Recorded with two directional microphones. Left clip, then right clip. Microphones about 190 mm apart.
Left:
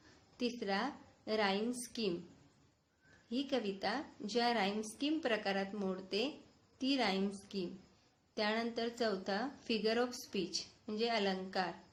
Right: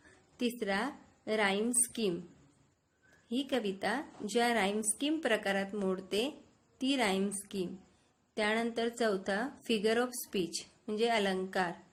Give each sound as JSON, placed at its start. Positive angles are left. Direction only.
{"t": 0.3, "sound": "speech", "side_deg": -50}
{"t": 3.2, "sound": "speech", "side_deg": -45}